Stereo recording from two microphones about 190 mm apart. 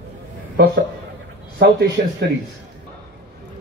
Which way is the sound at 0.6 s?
55° right (ahead or behind).